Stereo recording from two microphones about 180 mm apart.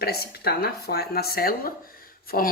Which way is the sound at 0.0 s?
60° left (ahead or behind).